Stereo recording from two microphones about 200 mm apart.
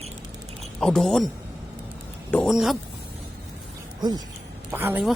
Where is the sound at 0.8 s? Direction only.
Centre (ahead or behind).